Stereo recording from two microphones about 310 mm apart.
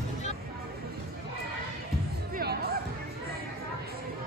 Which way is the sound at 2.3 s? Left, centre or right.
Right.